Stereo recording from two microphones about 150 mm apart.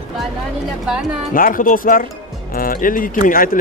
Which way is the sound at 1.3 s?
70° left (ahead or behind).